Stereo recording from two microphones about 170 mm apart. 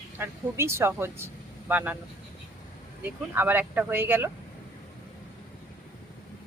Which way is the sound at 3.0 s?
10° right (ahead or behind).